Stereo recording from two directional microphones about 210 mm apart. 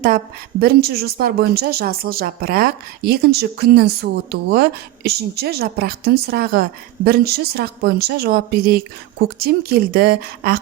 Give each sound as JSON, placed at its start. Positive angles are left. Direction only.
{"t": 0.6, "sound": "speech", "side_deg": -50}